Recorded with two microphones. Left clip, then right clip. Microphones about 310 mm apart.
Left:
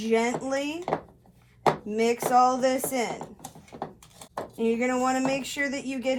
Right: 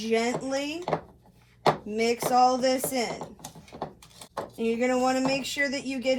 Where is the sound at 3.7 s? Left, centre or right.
Centre.